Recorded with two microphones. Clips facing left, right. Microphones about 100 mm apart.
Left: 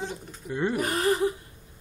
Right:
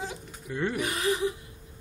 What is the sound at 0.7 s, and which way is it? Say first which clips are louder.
Speech: left 5 dB; 40° left (ahead or behind).